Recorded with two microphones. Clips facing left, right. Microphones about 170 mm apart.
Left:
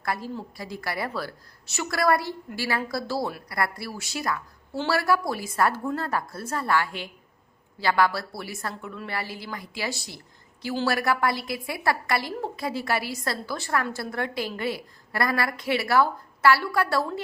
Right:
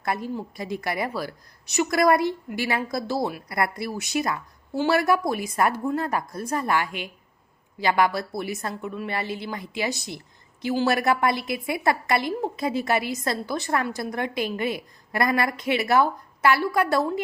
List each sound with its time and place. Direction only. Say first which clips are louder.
0.0 s a woman's voice: right 3 dB; 20° right (ahead or behind)